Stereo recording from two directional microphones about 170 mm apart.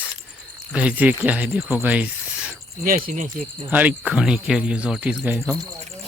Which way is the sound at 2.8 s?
55° right (ahead or behind).